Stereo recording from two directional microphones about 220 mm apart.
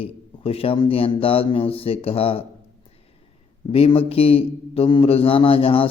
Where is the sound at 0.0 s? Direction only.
25° left (ahead or behind).